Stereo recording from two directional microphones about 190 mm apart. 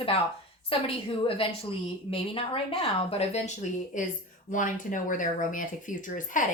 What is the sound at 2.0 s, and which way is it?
A woman's voice, 30° left (ahead or behind).